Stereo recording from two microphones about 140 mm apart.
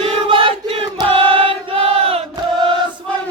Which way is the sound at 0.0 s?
40° right (ahead or behind).